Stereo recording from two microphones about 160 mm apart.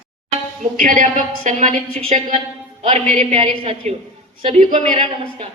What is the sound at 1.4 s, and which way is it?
Speech, 45° right (ahead or behind).